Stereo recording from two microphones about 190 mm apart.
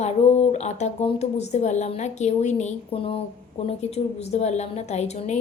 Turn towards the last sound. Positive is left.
turn(degrees=35)  # may be behind; listen again after turning